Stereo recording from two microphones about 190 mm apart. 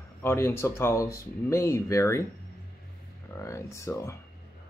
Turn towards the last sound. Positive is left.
turn(degrees=15)  # may be behind; listen again after turning